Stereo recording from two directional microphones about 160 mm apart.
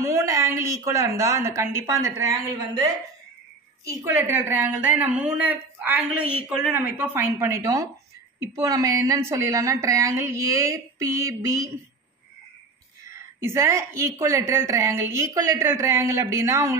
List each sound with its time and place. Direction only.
0.0 s a woman's voice: 20° right (ahead or behind)
3.8 s a woman's voice: 15° right (ahead or behind)
13.1 s a woman's voice: 15° right (ahead or behind)